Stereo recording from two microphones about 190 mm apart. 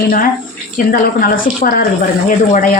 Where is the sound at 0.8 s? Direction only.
45° left (ahead or behind).